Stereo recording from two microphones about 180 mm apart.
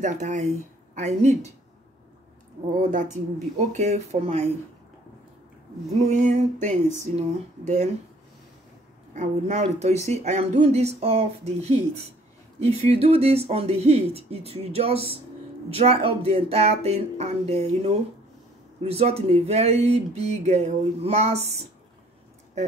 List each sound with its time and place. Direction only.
0.0 s speech: 40° right (ahead or behind)
2.8 s a woman's voice: 45° right (ahead or behind)
5.9 s speech: 40° right (ahead or behind)
9.1 s speech: 40° right (ahead or behind)